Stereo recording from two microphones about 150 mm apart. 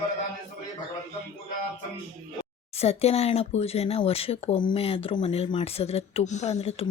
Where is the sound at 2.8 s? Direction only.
45° left (ahead or behind).